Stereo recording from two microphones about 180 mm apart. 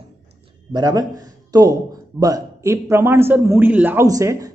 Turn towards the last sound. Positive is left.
turn(degrees=-20)  # may be behind; listen again after turning